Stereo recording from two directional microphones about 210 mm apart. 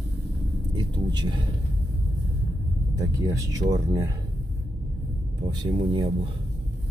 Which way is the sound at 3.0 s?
15° right (ahead or behind).